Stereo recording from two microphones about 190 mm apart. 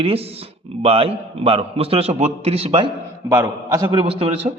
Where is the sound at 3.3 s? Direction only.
15° right (ahead or behind).